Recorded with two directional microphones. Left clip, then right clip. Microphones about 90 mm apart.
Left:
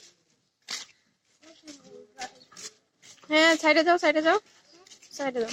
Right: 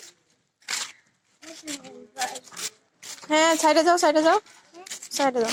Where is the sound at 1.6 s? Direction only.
25° right (ahead or behind).